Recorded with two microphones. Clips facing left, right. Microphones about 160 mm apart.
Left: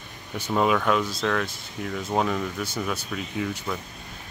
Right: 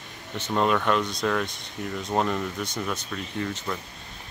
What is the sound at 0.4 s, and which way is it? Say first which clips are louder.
Speech: left 1 dB; 5° left (ahead or behind).